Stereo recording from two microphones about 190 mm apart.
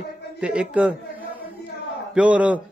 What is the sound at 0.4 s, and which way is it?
Speech, 5° right (ahead or behind).